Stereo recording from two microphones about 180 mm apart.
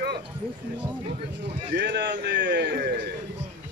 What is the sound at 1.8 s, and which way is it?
Speech, 75° right (ahead or behind).